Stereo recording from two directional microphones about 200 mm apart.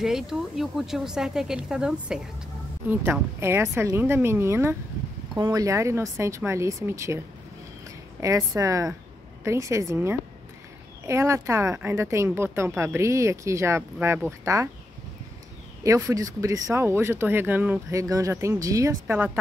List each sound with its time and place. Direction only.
0.0 s speech: centre (ahead or behind)
8.2 s speech: 15° right (ahead or behind)
15.8 s speech: 15° right (ahead or behind)